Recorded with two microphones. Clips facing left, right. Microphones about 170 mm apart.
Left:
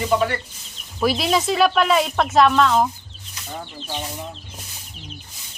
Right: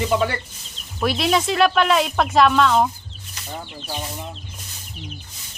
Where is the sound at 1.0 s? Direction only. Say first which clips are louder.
Even; centre (ahead or behind).